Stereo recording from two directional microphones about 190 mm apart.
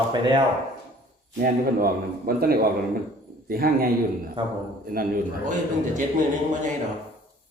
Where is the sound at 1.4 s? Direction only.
50° right (ahead or behind).